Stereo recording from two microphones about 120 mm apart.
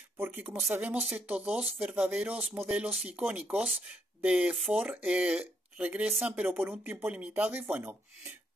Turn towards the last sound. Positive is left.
turn(degrees=-15)  # may be behind; listen again after turning